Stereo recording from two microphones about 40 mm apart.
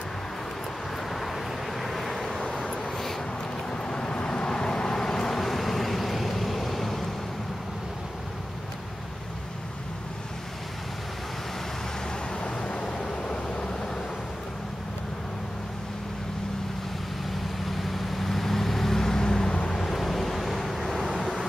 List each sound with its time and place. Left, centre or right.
1.1 s vehicle: centre
2.6 s a sound: centre
3.7 s vehicle: centre
12.4 s vehicle: left
17.6 s vehicle: centre
19.8 s vehicle: centre